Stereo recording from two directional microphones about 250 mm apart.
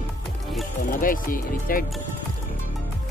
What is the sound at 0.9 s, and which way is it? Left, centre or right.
Speech, left.